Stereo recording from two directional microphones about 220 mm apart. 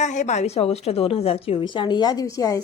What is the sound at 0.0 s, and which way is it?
A woman's voice, 35° left (ahead or behind).